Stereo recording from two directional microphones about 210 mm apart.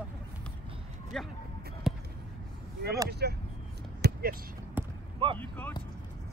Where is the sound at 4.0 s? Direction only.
45° right (ahead or behind).